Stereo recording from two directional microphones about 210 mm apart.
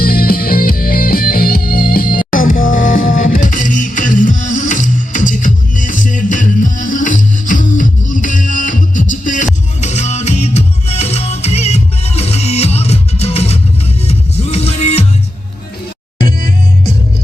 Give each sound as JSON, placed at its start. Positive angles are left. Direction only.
{"t": 0.0, "sound": "music", "side_deg": 45}